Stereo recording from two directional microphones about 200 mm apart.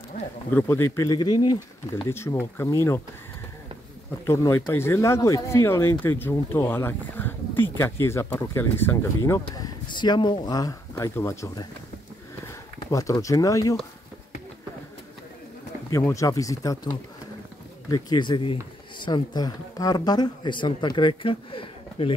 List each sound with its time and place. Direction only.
0.5 s speech: 10° left (ahead or behind)
4.3 s speech: 15° left (ahead or behind)
12.9 s speech: 15° left (ahead or behind)
15.9 s speech: 15° left (ahead or behind)